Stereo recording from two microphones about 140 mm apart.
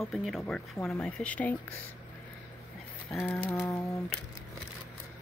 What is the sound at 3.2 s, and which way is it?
Typewriter, 20° left (ahead or behind).